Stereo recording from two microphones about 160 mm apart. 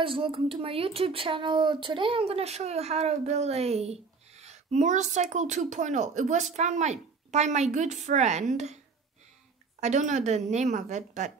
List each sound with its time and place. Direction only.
0.0 s speech: 35° right (ahead or behind)
9.8 s speech: 45° right (ahead or behind)